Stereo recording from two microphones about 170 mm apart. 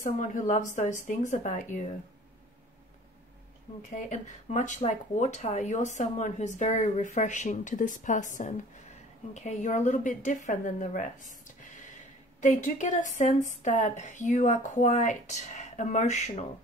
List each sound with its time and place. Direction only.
0.0 s speech: 50° left (ahead or behind)
3.9 s speech: 45° left (ahead or behind)